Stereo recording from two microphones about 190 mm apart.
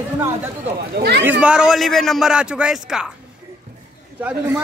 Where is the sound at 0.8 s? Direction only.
60° right (ahead or behind).